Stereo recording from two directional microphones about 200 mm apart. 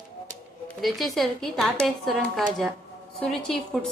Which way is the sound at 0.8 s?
Centre (ahead or behind).